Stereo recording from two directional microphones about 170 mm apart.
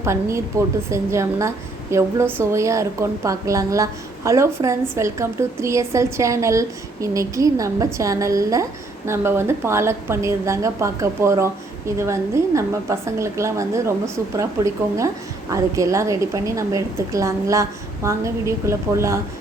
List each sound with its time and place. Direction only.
0.0 s a woman's voice: 15° right (ahead or behind)